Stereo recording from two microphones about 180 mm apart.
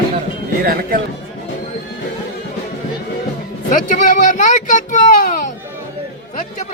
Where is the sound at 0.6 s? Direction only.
55° right (ahead or behind).